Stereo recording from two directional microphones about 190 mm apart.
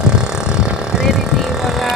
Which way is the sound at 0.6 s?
5° right (ahead or behind).